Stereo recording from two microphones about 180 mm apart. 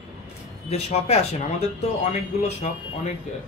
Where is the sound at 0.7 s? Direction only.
35° left (ahead or behind).